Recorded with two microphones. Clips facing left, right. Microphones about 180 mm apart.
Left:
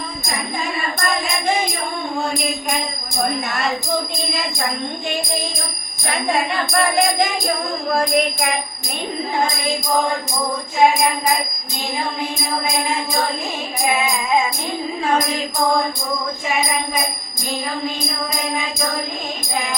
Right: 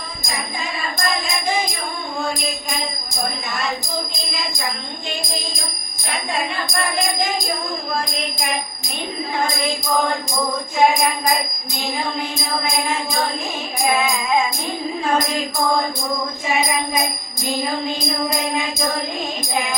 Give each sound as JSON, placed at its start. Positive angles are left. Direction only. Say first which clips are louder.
{"t": 6.3, "sound": "music", "louder": "left 4 dB", "side_deg": 60}